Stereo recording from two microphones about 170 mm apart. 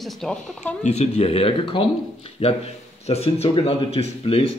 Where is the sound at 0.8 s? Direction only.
40° left (ahead or behind).